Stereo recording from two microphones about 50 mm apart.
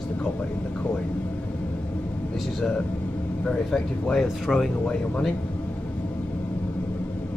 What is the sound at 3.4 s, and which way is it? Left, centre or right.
Speech, left.